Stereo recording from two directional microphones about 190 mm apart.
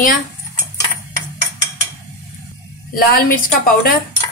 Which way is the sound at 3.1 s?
50° left (ahead or behind).